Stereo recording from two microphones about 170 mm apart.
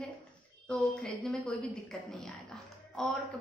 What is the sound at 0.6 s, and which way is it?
A woman's voice, 5° left (ahead or behind).